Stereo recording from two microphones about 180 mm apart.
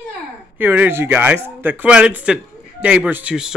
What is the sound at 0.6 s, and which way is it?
Speech, 10° right (ahead or behind).